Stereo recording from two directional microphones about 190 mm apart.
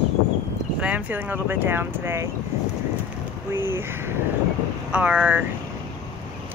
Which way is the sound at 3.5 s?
10° right (ahead or behind).